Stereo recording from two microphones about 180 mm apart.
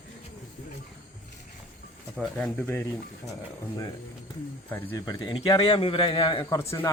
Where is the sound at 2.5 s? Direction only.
10° left (ahead or behind).